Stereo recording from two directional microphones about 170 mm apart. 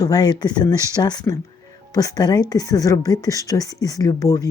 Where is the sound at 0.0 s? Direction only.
25° left (ahead or behind).